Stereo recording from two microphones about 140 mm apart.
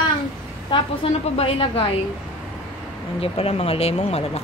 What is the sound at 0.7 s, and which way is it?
A woman's voice, 35° left (ahead or behind).